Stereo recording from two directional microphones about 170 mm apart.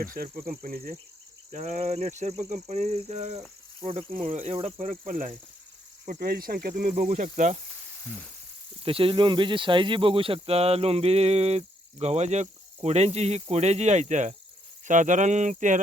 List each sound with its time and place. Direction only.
0.0 s speech: 60° right (ahead or behind)
1.5 s speech: 45° right (ahead or behind)
8.8 s speech: 35° right (ahead or behind)